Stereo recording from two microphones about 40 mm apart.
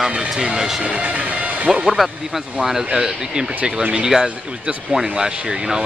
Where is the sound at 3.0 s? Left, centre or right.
Centre.